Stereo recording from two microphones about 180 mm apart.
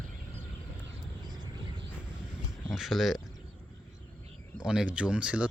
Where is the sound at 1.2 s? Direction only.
25° right (ahead or behind).